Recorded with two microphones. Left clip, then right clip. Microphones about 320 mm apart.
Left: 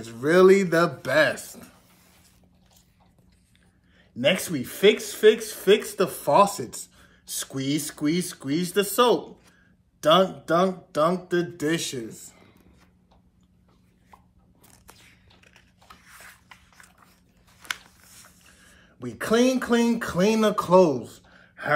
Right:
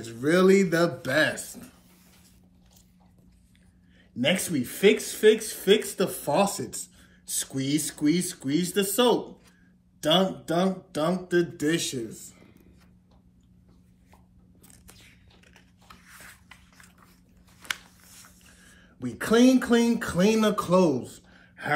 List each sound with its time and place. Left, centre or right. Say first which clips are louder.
0.0 s speech: left 4 dB; centre
4.2 s speech: left 3 dB; centre
10.4 s speech: left 4 dB; centre
14.9 s biting: left 2 dB; centre
15.4 s dog: left 1 dB; centre
17.6 s a sound: even; centre